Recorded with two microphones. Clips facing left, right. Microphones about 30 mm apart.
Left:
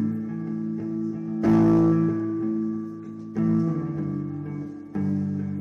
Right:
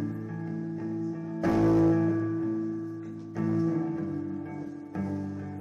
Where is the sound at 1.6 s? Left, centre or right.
Centre.